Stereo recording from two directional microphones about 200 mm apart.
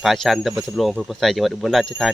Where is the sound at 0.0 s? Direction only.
Centre (ahead or behind).